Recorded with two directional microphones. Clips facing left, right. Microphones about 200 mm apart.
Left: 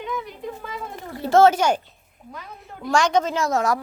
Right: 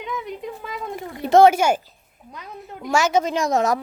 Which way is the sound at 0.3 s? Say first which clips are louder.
Right 2 dB; 20° right (ahead or behind).